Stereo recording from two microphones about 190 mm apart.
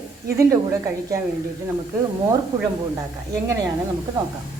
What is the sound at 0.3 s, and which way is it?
Speech, 15° right (ahead or behind).